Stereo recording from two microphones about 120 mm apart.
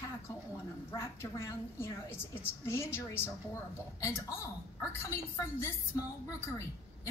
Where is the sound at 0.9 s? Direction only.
20° left (ahead or behind).